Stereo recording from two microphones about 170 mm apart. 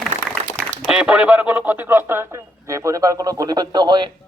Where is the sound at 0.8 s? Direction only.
5° right (ahead or behind).